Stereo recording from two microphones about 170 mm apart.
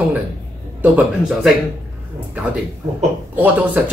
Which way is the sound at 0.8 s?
5° right (ahead or behind).